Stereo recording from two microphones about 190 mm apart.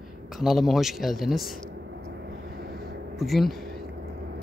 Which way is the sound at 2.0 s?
65° right (ahead or behind).